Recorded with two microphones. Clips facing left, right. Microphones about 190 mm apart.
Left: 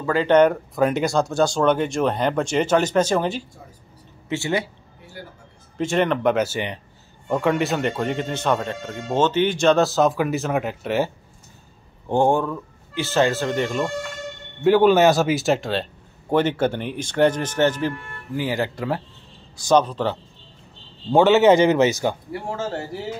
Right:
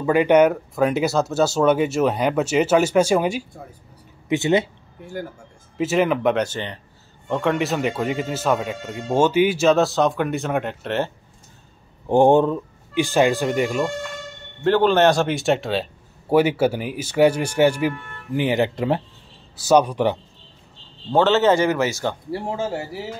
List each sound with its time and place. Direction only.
0.0 s speech: 15° right (ahead or behind)
5.8 s speech: 5° right (ahead or behind)
12.1 s speech: 20° right (ahead or behind)
14.6 s speech: 10° left (ahead or behind); by 19.0 s 20° right (ahead or behind)
19.5 s speech: 10° right (ahead or behind)
21.1 s speech: 10° left (ahead or behind)
22.5 s speech: 10° right (ahead or behind)